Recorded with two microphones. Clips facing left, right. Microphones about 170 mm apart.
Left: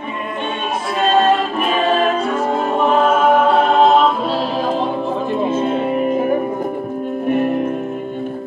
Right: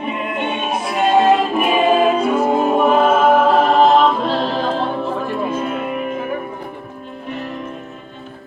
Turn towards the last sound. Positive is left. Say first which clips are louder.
# left 11 dB
turn(degrees=55)  # may be behind; listen again after turning